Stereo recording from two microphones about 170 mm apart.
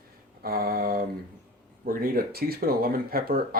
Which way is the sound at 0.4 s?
65° right (ahead or behind).